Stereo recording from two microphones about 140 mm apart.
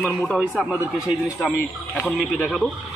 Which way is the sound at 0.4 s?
5° right (ahead or behind).